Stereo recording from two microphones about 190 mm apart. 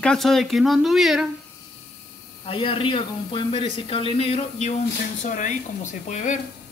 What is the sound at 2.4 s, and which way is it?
Speech, 30° left (ahead or behind).